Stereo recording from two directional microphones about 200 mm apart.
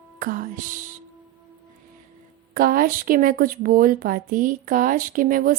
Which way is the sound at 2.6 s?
45° right (ahead or behind).